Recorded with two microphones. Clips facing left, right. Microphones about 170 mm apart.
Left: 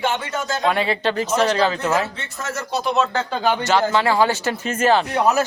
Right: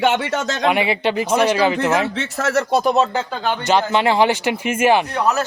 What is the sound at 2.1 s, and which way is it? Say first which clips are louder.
Speech: right 10 dB; 90° right.